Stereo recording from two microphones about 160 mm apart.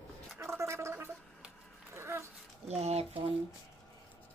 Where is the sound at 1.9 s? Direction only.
15° right (ahead or behind).